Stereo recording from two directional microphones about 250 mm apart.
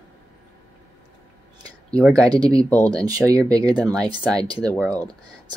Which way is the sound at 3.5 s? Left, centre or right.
Centre.